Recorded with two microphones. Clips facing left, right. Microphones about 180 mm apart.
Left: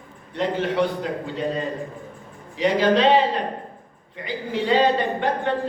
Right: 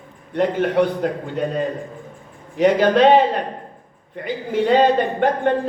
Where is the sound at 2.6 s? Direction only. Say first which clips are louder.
Right 4 dB; 50° right (ahead or behind).